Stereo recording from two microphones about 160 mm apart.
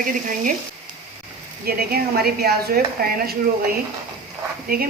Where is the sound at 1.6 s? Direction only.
75° right (ahead or behind).